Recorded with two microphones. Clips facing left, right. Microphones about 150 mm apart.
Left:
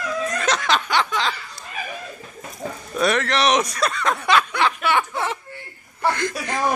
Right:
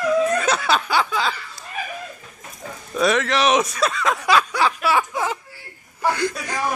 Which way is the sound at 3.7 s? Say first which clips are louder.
Right 1 dB; centre (ahead or behind).